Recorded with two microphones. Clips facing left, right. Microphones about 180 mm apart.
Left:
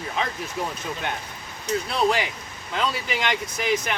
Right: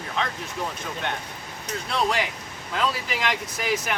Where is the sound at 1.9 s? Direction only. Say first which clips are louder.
Even; centre (ahead or behind).